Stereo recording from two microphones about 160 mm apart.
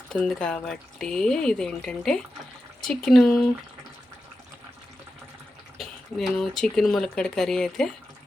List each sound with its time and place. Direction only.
0.1 s speech: 5° left (ahead or behind)
5.7 s speech: centre (ahead or behind)